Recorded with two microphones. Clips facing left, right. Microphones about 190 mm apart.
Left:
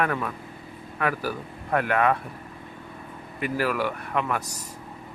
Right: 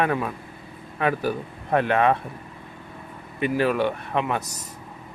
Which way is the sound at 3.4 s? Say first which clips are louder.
Right 4 dB; 25° right (ahead or behind).